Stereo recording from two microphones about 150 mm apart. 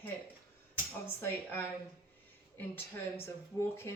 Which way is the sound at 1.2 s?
15° left (ahead or behind).